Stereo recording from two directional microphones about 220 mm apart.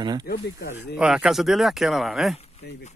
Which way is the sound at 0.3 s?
40° left (ahead or behind).